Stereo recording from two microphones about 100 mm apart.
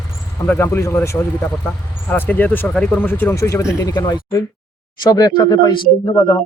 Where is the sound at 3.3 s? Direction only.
30° left (ahead or behind).